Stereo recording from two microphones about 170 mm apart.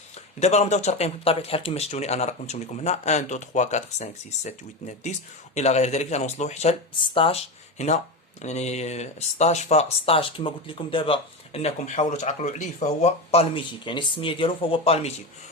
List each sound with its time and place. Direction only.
0.3 s speech: 40° left (ahead or behind)
7.8 s speech: 40° left (ahead or behind)